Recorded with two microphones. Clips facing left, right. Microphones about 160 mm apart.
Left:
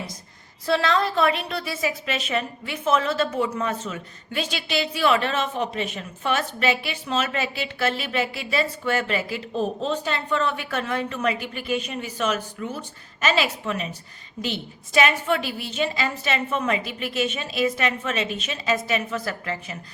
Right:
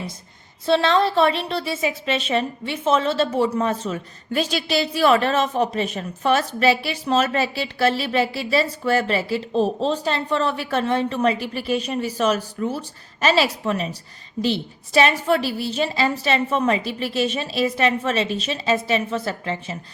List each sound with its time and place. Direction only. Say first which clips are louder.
0.6 s a woman's voice: right 4 dB; 25° right (ahead or behind)